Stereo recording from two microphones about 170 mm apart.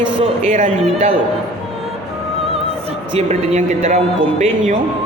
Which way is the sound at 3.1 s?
40° right (ahead or behind).